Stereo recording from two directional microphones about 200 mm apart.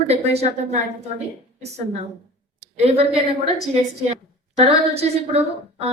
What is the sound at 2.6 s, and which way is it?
Speech, 30° right (ahead or behind).